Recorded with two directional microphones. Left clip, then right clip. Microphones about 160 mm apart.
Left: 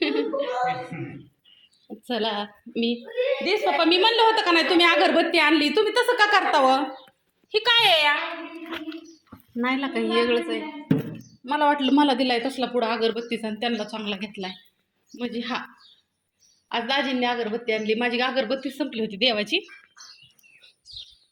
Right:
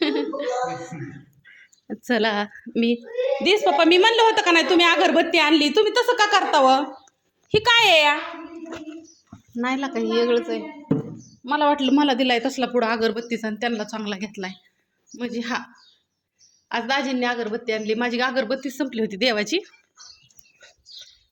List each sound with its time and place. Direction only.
0.0 s a sound: 20° right (ahead or behind)
1.9 s a woman's voice: 45° right (ahead or behind)
3.4 s a woman's voice: 55° right (ahead or behind)
4.1 s a woman's voice: 35° right (ahead or behind)
7.5 s speech: 45° right (ahead or behind)
9.6 s a woman's voice: 20° right (ahead or behind)
11.4 s a woman's voice: 15° right (ahead or behind)
15.1 s speech: 15° right (ahead or behind)
16.6 s speech: 10° right (ahead or behind)
18.8 s speech: 35° right (ahead or behind)
20.2 s bird: 50° right (ahead or behind)